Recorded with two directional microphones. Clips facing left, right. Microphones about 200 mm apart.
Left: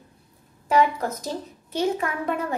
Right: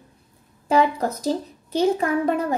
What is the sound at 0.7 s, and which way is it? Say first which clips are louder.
A child's voice: right 2 dB; 35° right (ahead or behind).